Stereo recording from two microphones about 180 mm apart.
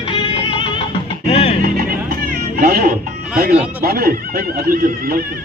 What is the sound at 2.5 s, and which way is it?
Music, 55° right (ahead or behind).